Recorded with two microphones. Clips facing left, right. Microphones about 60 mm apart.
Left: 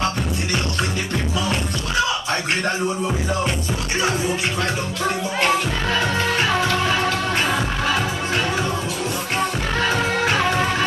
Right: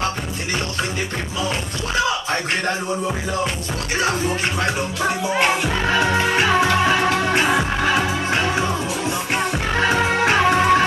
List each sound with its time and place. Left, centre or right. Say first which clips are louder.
6.1 s music: right 3 dB; centre
9.8 s music: right 3 dB; centre